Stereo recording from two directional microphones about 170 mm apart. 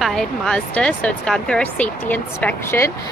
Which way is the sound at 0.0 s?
5° left (ahead or behind).